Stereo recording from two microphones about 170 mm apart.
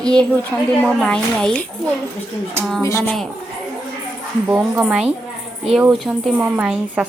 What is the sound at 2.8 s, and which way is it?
Speech, 15° left (ahead or behind).